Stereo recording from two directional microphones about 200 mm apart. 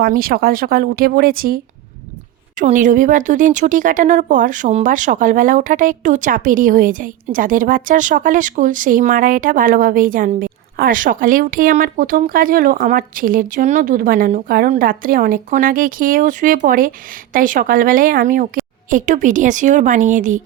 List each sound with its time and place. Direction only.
0.0 s a woman's voice: 45° right (ahead or behind)